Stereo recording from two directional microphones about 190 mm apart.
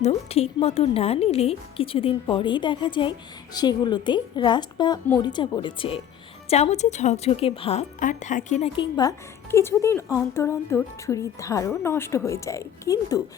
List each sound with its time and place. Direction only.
0.0 s a woman's voice: 35° left (ahead or behind)
8.7 s a woman's voice: 20° left (ahead or behind)